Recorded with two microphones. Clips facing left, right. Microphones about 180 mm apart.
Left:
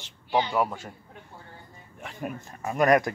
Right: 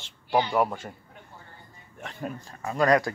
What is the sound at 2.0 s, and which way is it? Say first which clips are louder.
Speech: even; 10° left (ahead or behind).